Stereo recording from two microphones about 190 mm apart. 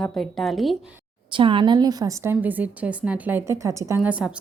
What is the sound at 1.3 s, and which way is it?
A woman's voice, 25° right (ahead or behind).